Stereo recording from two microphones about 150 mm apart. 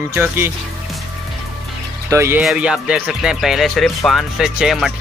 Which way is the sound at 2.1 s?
15° right (ahead or behind).